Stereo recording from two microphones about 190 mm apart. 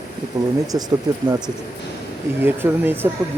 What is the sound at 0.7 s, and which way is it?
Speech, 20° right (ahead or behind).